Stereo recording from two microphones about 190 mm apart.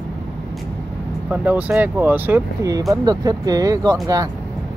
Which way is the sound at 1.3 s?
10° right (ahead or behind).